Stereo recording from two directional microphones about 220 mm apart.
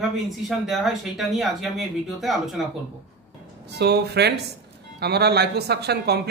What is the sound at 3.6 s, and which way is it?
Speech, 50° right (ahead or behind).